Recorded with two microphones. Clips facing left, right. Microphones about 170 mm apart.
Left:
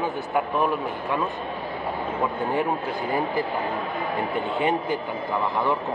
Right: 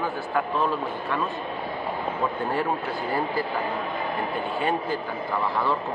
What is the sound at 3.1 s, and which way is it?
Speech, 20° left (ahead or behind).